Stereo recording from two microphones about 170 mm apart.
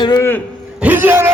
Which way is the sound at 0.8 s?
10° right (ahead or behind).